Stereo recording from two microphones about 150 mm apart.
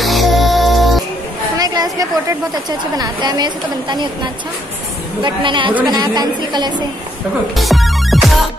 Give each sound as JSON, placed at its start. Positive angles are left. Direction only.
{"t": 0.0, "sound": "music", "side_deg": 0}
{"t": 1.6, "sound": "a woman's voice", "side_deg": -25}
{"t": 7.5, "sound": "music", "side_deg": 0}